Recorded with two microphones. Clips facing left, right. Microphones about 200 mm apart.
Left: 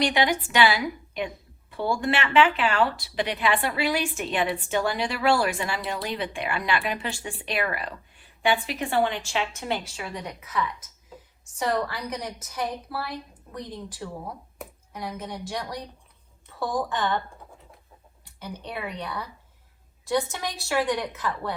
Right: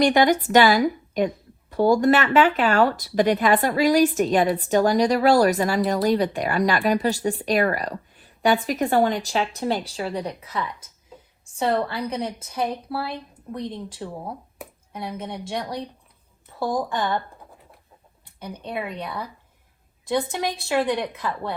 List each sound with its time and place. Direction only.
0.0 s a woman's voice: 45° right (ahead or behind); by 15.8 s 25° right (ahead or behind)
20.1 s a woman's voice: 20° right (ahead or behind)